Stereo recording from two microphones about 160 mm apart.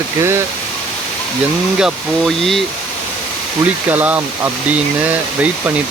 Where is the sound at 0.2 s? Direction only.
15° right (ahead or behind).